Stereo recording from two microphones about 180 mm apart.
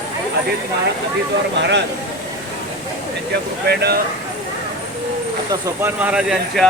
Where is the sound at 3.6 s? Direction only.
65° right (ahead or behind).